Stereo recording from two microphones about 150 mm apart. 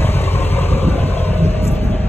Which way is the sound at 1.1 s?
45° left (ahead or behind).